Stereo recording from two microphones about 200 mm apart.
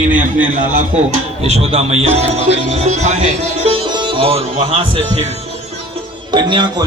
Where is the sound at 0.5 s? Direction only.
40° right (ahead or behind).